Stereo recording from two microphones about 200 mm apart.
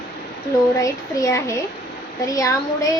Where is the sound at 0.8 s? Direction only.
15° left (ahead or behind).